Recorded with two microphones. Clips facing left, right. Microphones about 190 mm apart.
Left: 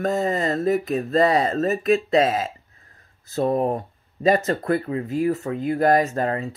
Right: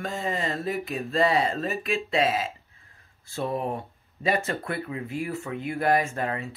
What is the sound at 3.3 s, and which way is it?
Speech, 40° left (ahead or behind).